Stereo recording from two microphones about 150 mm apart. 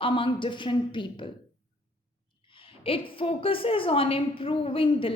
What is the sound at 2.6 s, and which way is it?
A woman's voice, 35° left (ahead or behind).